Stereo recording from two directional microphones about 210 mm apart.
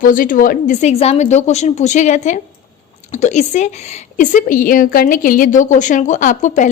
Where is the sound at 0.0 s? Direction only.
40° left (ahead or behind).